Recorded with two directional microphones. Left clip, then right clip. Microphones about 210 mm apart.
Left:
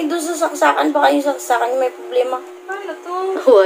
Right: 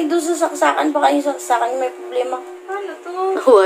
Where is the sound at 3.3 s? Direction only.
10° right (ahead or behind).